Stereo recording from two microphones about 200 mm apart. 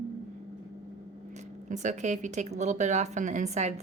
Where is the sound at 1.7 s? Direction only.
35° right (ahead or behind).